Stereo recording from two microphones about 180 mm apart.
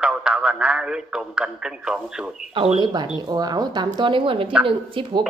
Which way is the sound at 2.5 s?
30° right (ahead or behind).